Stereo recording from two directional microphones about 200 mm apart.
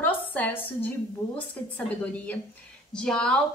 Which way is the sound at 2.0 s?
5° left (ahead or behind).